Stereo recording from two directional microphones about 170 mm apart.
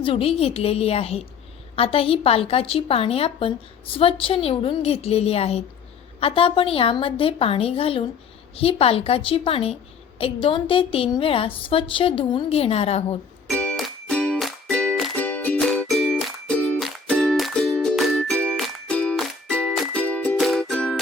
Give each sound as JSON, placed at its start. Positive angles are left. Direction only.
{"t": 0.0, "sound": "a woman's voice", "side_deg": 30}
{"t": 13.5, "sound": "music", "side_deg": 5}